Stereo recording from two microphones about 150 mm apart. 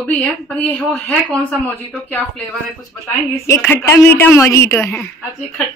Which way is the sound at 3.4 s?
15° left (ahead or behind).